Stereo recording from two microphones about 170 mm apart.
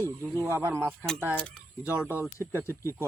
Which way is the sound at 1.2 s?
10° left (ahead or behind).